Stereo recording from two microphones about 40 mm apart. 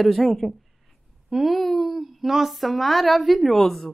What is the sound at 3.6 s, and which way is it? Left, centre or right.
Speech, centre.